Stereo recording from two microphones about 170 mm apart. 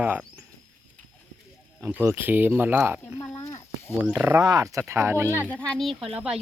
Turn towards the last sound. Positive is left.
turn(degrees=-5)  # may be behind; listen again after turning